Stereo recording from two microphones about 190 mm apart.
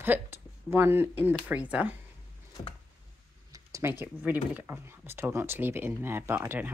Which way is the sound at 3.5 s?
15° right (ahead or behind).